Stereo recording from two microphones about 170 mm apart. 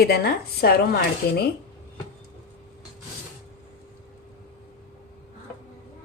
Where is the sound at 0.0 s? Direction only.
65° left (ahead or behind).